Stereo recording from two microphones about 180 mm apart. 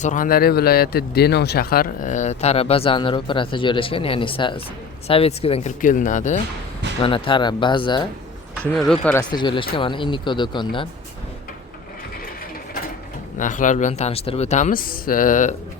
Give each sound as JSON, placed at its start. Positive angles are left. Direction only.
{"t": 0.0, "sound": "speech", "side_deg": 45}
{"t": 7.0, "sound": "speech", "side_deg": 30}
{"t": 9.1, "sound": "speech", "side_deg": 25}
{"t": 13.3, "sound": "speech", "side_deg": 45}